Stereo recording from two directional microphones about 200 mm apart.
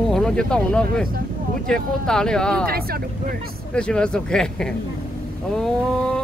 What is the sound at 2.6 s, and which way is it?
Speech, 50° right (ahead or behind).